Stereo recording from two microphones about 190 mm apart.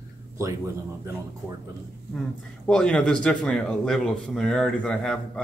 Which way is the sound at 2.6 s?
5° left (ahead or behind).